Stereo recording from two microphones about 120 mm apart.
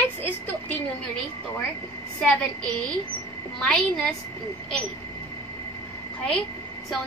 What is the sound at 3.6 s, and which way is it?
Speech, 5° left (ahead or behind).